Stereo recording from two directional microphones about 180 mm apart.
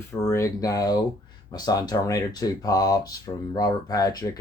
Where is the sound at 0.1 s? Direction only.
15° left (ahead or behind).